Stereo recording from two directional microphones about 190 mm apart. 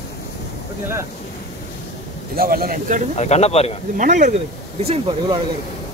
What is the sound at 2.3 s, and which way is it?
Speech, 50° right (ahead or behind).